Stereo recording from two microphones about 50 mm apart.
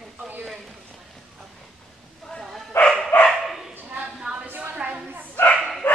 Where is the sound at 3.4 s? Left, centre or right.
Centre.